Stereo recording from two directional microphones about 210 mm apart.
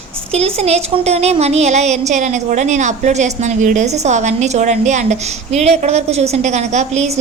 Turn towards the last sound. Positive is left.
turn(degrees=-30)  # may be behind; listen again after turning